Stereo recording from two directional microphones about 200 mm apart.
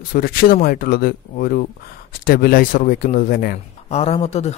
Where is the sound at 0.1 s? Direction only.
45° left (ahead or behind).